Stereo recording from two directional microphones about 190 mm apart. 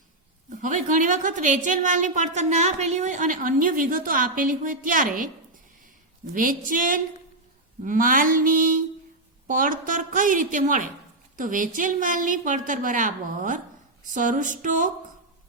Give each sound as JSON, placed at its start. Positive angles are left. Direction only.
{"t": 0.6, "sound": "a woman's voice", "side_deg": -45}
{"t": 6.3, "sound": "a woman's voice", "side_deg": -45}